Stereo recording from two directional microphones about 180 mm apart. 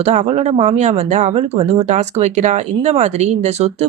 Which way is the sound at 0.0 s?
35° right (ahead or behind).